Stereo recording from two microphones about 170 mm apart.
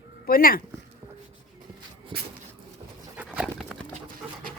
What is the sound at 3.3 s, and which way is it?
Clip-clop, 5° right (ahead or behind).